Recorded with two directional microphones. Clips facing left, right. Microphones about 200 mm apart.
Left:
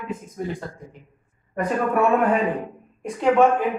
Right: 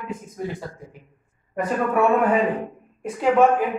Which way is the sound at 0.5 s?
5° right (ahead or behind).